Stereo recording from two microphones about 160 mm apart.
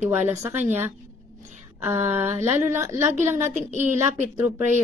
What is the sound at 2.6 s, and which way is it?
Speech, 15° right (ahead or behind).